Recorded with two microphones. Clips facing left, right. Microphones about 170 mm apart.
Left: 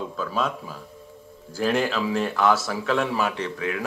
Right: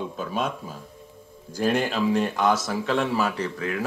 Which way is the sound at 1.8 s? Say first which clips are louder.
Left 1 dB; 45° right (ahead or behind).